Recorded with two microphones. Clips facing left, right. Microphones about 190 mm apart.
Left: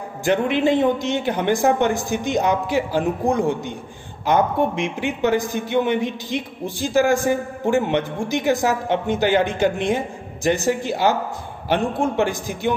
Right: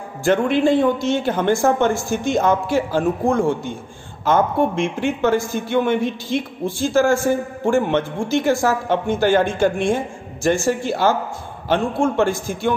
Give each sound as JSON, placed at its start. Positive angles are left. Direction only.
{"t": 0.2, "sound": "a man's voice", "side_deg": 15}